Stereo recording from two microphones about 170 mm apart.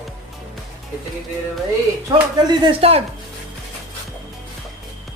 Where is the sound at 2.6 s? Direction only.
35° right (ahead or behind).